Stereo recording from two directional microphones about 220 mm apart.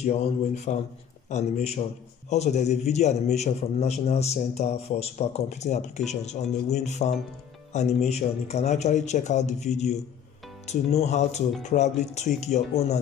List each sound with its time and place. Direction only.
0.0 s a man's voice: 30° left (ahead or behind)